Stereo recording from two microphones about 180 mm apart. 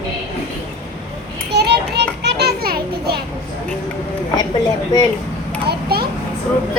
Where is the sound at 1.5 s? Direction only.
65° right (ahead or behind).